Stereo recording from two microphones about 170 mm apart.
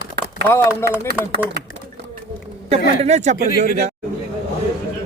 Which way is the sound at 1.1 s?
65° right (ahead or behind).